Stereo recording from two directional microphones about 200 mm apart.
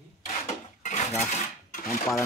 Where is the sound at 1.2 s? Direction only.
40° left (ahead or behind).